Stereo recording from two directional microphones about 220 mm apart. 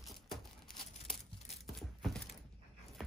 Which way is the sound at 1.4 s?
Centre (ahead or behind).